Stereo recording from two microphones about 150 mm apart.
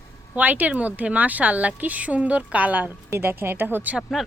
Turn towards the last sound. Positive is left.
turn(degrees=-10)  # may be behind; listen again after turning